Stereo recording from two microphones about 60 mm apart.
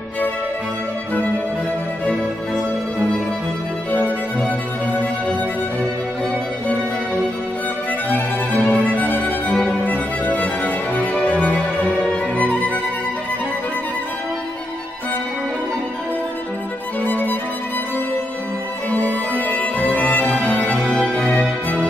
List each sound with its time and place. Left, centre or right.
3.9 s music: left
8.6 s music: left
17.0 s music: left
18.9 s music: left
20.2 s music: centre
21.3 s music: left